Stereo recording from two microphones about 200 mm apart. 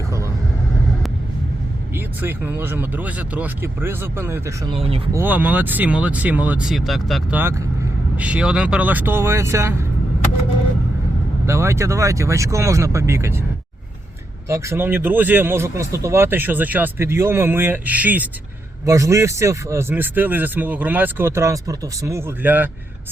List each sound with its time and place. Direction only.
2.0 s a man's voice: 10° right (ahead or behind)
4.7 s speech: 30° right (ahead or behind)
5.1 s a man's voice: 10° right (ahead or behind)
11.4 s a man's voice: 15° right (ahead or behind)
14.4 s a man's voice: 15° right (ahead or behind)